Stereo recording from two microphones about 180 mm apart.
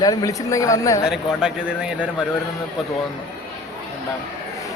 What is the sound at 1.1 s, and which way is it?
A man's voice, 5° right (ahead or behind).